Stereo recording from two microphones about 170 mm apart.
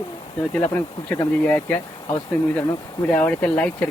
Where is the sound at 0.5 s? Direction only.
15° left (ahead or behind).